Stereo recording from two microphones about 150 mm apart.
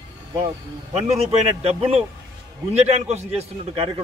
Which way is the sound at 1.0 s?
45° right (ahead or behind).